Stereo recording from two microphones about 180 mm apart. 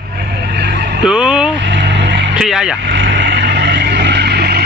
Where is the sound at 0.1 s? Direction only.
65° right (ahead or behind).